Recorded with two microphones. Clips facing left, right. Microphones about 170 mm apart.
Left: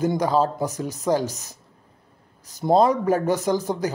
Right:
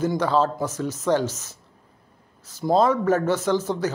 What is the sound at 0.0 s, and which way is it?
A man's voice, 15° left (ahead or behind).